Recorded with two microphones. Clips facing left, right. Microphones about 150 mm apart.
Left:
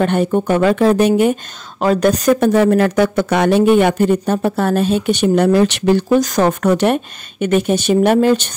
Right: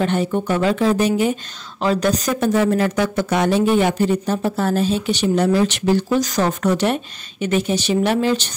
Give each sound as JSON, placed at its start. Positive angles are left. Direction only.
{"t": 0.0, "sound": "speech", "side_deg": 55}